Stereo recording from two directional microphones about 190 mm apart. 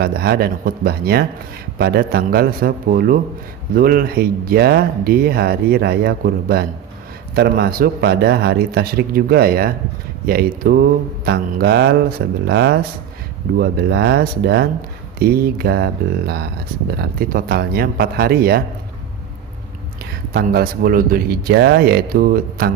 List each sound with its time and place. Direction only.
0.0 s a man's voice: 55° right (ahead or behind)
20.3 s speech: 55° right (ahead or behind)